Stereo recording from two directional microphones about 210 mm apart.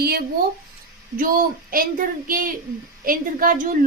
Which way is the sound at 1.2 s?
40° right (ahead or behind).